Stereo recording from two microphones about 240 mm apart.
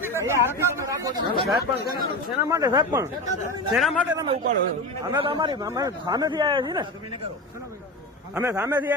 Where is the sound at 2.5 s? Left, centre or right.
Centre.